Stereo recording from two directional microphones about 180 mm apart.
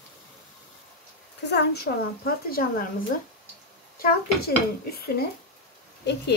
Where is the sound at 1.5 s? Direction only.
65° left (ahead or behind).